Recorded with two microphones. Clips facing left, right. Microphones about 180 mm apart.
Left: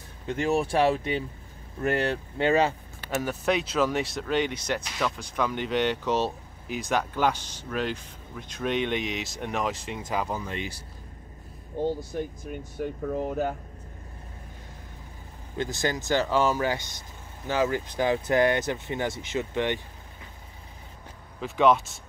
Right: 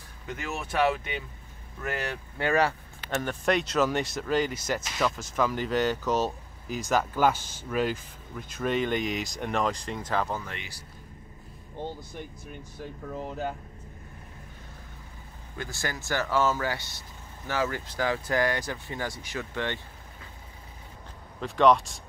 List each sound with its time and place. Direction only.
0.3 s speech: 30° left (ahead or behind)
3.1 s speech: 5° left (ahead or behind)
11.8 s speech: 45° left (ahead or behind)
12.8 s speech: 55° left (ahead or behind)
15.5 s speech: 20° left (ahead or behind)
21.4 s speech: centre (ahead or behind)